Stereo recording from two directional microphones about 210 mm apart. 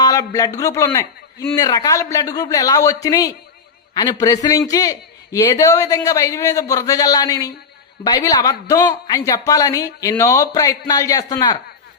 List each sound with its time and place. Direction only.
0.0 s a man's voice: 15° left (ahead or behind)